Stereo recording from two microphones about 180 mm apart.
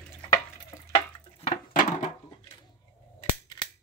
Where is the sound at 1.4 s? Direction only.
45° left (ahead or behind).